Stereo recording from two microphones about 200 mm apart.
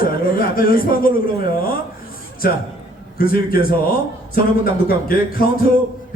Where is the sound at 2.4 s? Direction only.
45° left (ahead or behind).